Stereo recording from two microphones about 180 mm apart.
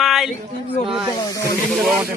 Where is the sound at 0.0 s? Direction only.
Centre (ahead or behind).